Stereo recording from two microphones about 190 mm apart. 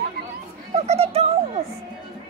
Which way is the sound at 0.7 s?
35° right (ahead or behind).